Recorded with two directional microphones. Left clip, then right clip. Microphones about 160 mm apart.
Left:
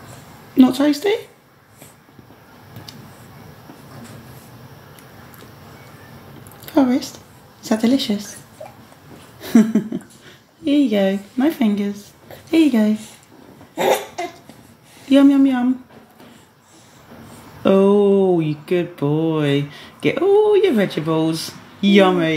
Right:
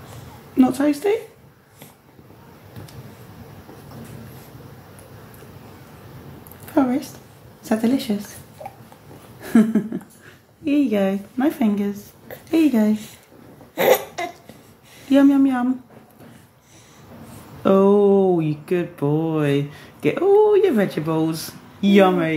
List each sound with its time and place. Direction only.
0.6 s speech: 45° left (ahead or behind)
6.7 s a sound: 45° left (ahead or behind)
7.6 s speech: 45° left (ahead or behind)
9.4 s a sound: 45° left (ahead or behind)
10.6 s speech: 40° left (ahead or behind)
15.0 s speech: 35° left (ahead or behind)
17.6 s speech: 35° left (ahead or behind)